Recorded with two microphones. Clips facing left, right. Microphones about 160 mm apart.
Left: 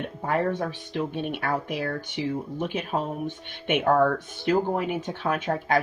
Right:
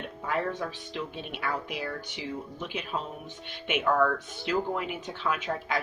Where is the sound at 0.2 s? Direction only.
50° left (ahead or behind).